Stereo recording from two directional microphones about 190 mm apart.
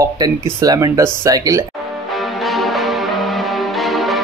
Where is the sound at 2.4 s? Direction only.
Centre (ahead or behind).